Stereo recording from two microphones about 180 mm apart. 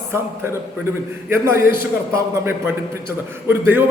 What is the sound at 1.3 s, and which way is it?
A man's voice, 15° right (ahead or behind).